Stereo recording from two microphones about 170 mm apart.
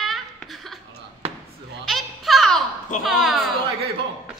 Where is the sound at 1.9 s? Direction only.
Centre (ahead or behind).